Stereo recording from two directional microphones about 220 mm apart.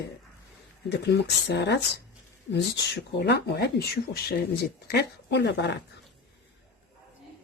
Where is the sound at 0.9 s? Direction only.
50° left (ahead or behind).